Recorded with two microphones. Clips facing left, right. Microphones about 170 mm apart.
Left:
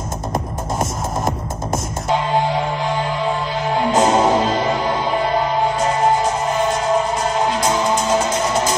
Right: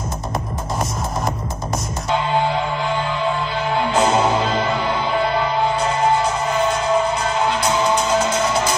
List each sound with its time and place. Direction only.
3.9 s music: 40° left (ahead or behind)
7.6 s music: 45° left (ahead or behind)